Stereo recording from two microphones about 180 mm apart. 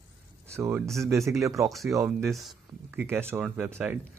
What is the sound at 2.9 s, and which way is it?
Speech, 10° right (ahead or behind).